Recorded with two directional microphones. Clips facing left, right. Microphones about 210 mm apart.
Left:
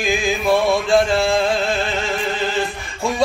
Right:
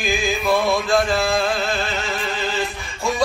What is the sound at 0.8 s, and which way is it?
Male singing, 25° left (ahead or behind).